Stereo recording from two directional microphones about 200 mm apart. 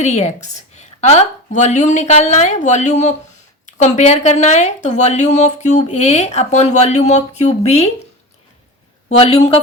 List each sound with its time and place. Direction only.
0.0 s speech: 35° left (ahead or behind)
9.0 s a man's voice: 30° left (ahead or behind)